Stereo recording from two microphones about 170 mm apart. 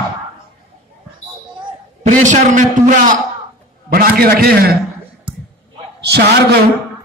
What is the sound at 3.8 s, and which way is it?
Speech, 65° right (ahead or behind).